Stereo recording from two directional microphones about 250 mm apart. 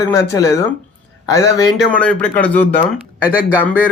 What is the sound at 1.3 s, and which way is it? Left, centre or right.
A man's voice, centre.